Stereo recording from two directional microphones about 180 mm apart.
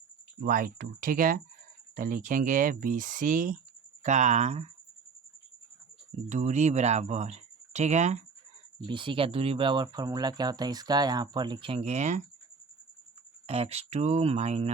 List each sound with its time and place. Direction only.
0.4 s speech: 50° right (ahead or behind)
6.2 s speech: 40° right (ahead or behind)
8.9 s speech: 25° right (ahead or behind)
13.5 s speech: 35° right (ahead or behind)